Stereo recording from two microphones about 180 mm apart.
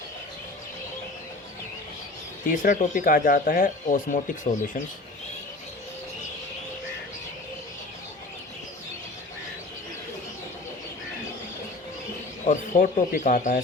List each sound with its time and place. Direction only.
2.5 s speech: 45° left (ahead or behind)
12.5 s speech: 45° left (ahead or behind)